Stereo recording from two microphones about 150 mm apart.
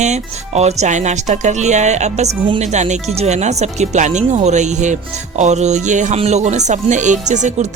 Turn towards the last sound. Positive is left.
turn(degrees=-50)  # may be behind; listen again after turning